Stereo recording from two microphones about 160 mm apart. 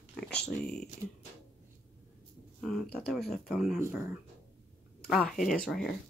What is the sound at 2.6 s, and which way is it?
Speech, centre (ahead or behind).